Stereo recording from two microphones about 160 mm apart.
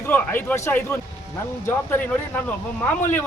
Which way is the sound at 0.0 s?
10° left (ahead or behind).